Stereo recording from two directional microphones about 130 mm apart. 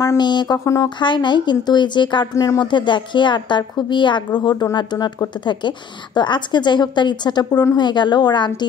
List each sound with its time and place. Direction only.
0.2 s a woman's voice: 35° left (ahead or behind)